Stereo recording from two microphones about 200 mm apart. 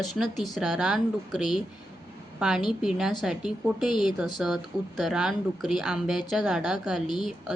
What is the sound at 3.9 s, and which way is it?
Speech, 25° left (ahead or behind).